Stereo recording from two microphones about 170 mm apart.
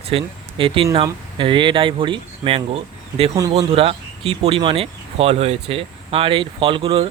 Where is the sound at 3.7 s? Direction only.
35° right (ahead or behind).